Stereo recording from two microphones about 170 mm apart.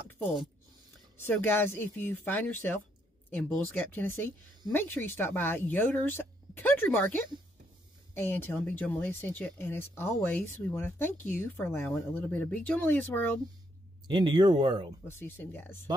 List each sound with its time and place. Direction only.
1.2 s speech: 15° left (ahead or behind)
14.0 s speech: 25° right (ahead or behind)
15.0 s speech: 15° left (ahead or behind)